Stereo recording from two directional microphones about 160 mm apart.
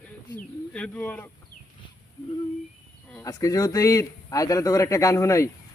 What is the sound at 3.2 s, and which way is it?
A man's voice, 20° left (ahead or behind).